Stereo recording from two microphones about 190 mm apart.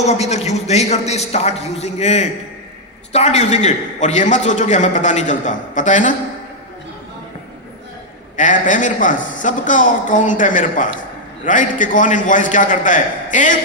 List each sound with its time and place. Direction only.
0.0 s a man's voice: 35° left (ahead or behind)
8.4 s a woman's voice: 40° left (ahead or behind)